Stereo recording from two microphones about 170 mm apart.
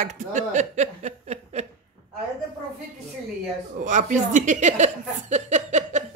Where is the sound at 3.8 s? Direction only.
45° right (ahead or behind).